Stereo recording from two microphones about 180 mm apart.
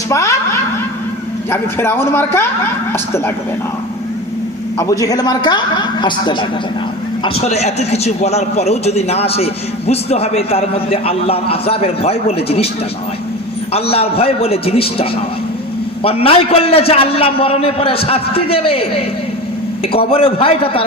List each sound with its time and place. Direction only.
0.1 s a sound: 15° left (ahead or behind)
1.5 s a man's voice: 15° left (ahead or behind)
4.8 s a woman's voice: 20° left (ahead or behind); by 12.6 s 35° left (ahead or behind)
13.7 s a man's voice: 35° left (ahead or behind)
16.0 s a man's voice: 30° left (ahead or behind)